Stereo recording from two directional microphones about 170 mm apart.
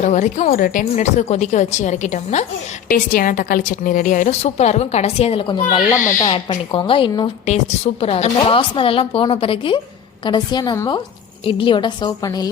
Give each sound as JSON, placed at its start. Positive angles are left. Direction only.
{"t": 0.0, "sound": "a woman's voice", "side_deg": 45}
{"t": 2.9, "sound": "a woman's voice", "side_deg": 55}
{"t": 5.6, "sound": "a woman's voice", "side_deg": 15}
{"t": 6.3, "sound": "a woman's voice", "side_deg": 30}